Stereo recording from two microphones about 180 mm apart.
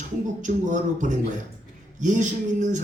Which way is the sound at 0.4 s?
45° right (ahead or behind).